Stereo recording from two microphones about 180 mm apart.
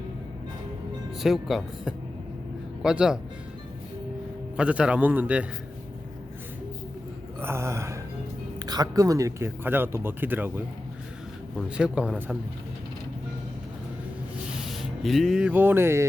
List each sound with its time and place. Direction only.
1.2 s a man's voice: centre (ahead or behind)
4.5 s speech: 5° right (ahead or behind)
7.4 s speech: 15° right (ahead or behind)
11.5 s a man's voice: 5° right (ahead or behind)
14.6 s speech: centre (ahead or behind)